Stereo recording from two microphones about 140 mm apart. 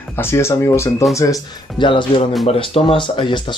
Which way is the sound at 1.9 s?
35° left (ahead or behind).